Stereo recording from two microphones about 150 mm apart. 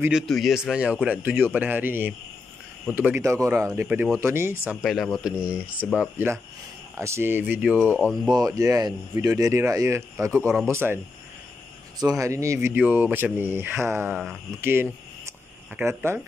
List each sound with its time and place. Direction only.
0.1 s speech: centre (ahead or behind)
4.8 s speech: centre (ahead or behind)
8.3 s speech: 25° right (ahead or behind)
12.0 s speech: 25° right (ahead or behind)
14.6 s a sound: 15° right (ahead or behind)